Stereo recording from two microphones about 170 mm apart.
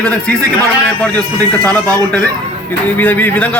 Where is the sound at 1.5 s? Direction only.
5° left (ahead or behind).